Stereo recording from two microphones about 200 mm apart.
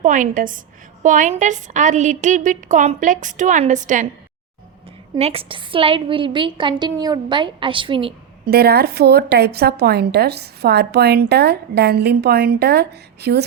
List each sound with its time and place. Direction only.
0.0 s a woman's voice: 40° right (ahead or behind)
5.1 s a woman's voice: 30° right (ahead or behind)
8.4 s a woman's voice: 50° right (ahead or behind)